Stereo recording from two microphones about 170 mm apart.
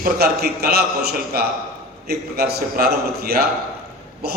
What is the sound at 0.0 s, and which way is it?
A man's voice, 65° right (ahead or behind).